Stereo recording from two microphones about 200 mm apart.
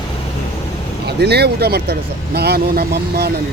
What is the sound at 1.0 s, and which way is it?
Speech, 55° right (ahead or behind).